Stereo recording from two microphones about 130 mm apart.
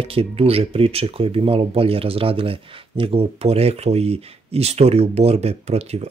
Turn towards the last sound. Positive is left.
turn(degrees=-55)  # may be behind; listen again after turning